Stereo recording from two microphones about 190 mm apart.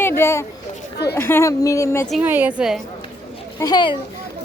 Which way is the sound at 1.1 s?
15° left (ahead or behind).